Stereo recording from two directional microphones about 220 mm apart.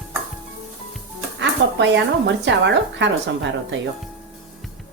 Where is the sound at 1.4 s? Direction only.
55° right (ahead or behind).